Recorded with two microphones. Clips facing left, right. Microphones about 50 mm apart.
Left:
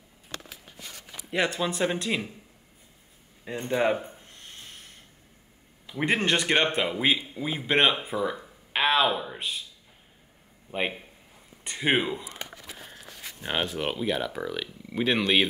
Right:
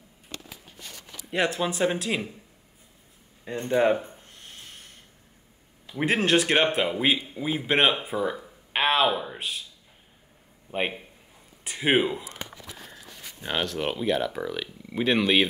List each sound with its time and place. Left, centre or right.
1.3 s a man's voice: centre
3.4 s a sound: centre
5.9 s a man's voice: centre
10.7 s a man's voice: centre
12.3 s a sound: left
13.4 s speech: centre
13.7 s a man's voice: centre